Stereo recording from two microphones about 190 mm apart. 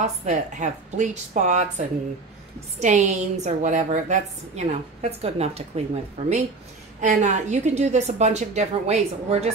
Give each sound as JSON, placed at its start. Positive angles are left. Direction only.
{"t": 0.0, "sound": "a woman's voice", "side_deg": -40}